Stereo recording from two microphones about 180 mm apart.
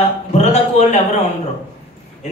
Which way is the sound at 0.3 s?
40° left (ahead or behind).